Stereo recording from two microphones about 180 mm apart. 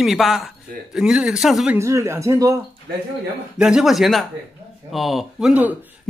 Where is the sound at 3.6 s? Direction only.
5° right (ahead or behind).